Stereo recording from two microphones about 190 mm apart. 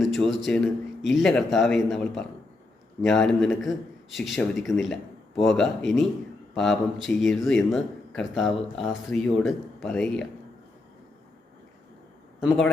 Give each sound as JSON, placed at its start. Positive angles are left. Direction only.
{"t": 0.0, "sound": "a man's voice", "side_deg": 0}
{"t": 12.4, "sound": "a man's voice", "side_deg": 5}